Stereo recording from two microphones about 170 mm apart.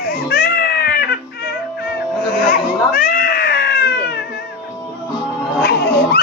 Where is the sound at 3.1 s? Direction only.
70° left (ahead or behind).